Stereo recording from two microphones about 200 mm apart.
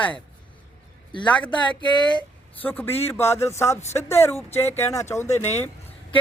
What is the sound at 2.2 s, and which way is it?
Speech, 10° left (ahead or behind).